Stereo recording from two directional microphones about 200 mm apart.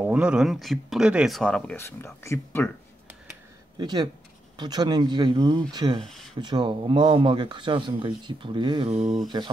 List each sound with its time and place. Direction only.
0.0 s speech: 5° right (ahead or behind); by 2.7 s 10° left (ahead or behind)
3.7 s speech: 20° right (ahead or behind)
5.9 s speech: centre (ahead or behind)
6.4 s speech: 20° right (ahead or behind)